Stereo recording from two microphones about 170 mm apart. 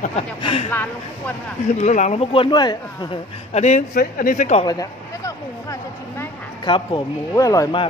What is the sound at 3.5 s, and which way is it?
Speech, 40° left (ahead or behind).